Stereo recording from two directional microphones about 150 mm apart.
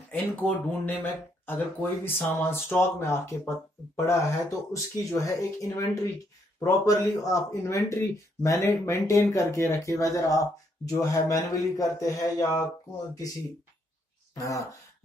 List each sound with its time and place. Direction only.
0.1 s speech: 10° left (ahead or behind)
14.3 s speech: 20° left (ahead or behind)